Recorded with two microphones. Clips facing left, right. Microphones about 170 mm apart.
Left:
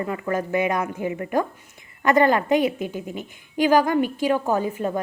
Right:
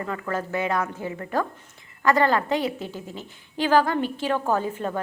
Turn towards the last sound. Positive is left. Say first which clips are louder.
# left 2 dB
turn(degrees=10)  # may be behind; listen again after turning